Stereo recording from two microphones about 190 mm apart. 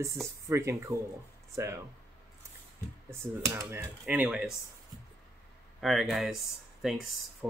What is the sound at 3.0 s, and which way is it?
Speech, 15° right (ahead or behind).